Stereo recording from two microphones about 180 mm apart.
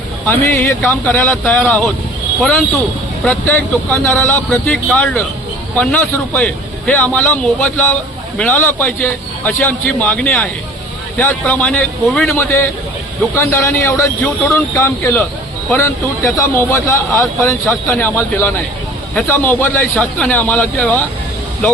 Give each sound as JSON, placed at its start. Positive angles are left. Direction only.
{"t": 0.3, "sound": "a man's voice", "side_deg": 10}